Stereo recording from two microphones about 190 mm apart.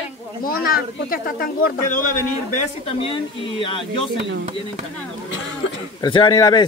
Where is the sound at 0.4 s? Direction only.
50° left (ahead or behind).